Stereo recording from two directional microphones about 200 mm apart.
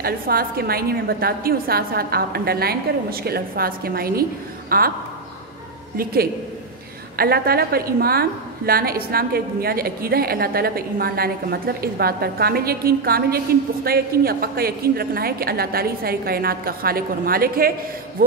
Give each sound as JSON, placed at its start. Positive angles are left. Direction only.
{"t": 0.0, "sound": "a woman's voice", "side_deg": -50}
{"t": 7.2, "sound": "a woman's voice", "side_deg": -50}